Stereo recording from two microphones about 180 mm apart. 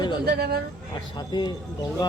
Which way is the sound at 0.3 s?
60° right (ahead or behind).